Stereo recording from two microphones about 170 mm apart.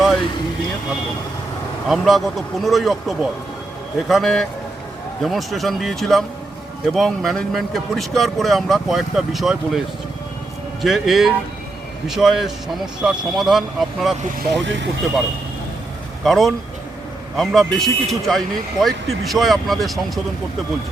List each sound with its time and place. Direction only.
1.9 s a man's voice: centre (ahead or behind)
10.8 s a man's voice: centre (ahead or behind)
14.6 s speech: 90° right
16.2 s a man's voice: centre (ahead or behind)